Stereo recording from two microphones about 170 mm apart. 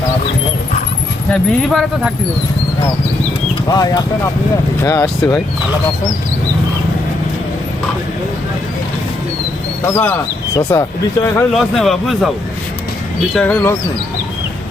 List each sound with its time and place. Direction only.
1.3 s speech: centre (ahead or behind)
3.7 s speech: 20° left (ahead or behind)
9.8 s speech: 15° left (ahead or behind)
11.5 s speech: centre (ahead or behind)
13.3 s speech: 10° left (ahead or behind)